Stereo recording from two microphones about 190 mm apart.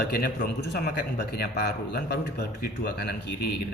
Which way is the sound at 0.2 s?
60° left (ahead or behind).